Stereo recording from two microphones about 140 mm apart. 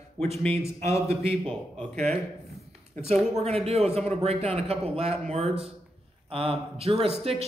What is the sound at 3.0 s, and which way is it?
Speech, 50° right (ahead or behind).